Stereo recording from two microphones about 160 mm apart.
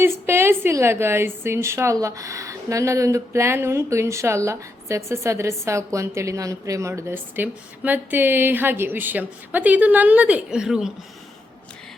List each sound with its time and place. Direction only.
0.0 s a woman's voice: 15° right (ahead or behind)